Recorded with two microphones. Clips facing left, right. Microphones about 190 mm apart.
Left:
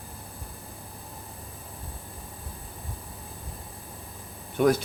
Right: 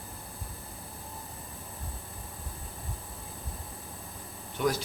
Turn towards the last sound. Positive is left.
turn(degrees=55)  # may be behind; listen again after turning